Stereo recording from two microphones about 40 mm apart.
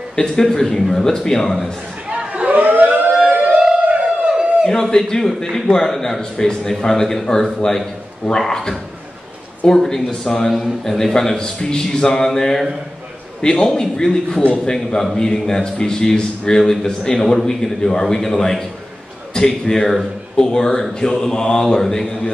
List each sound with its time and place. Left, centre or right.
0.1 s a man's voice: centre
2.0 s chatter: right
2.6 s siren: right
3.2 s a sound: right
3.4 s music: centre
3.9 s a sound: right
4.6 s a man's voice: centre